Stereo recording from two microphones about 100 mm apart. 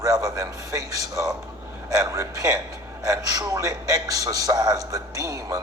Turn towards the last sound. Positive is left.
turn(degrees=-35)  # may be behind; listen again after turning